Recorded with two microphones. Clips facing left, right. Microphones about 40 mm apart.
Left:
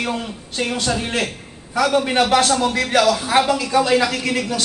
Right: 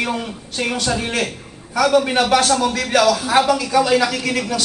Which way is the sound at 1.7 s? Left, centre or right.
Left.